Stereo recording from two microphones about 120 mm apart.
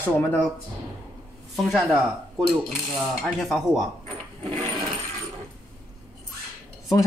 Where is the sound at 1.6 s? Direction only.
Centre (ahead or behind).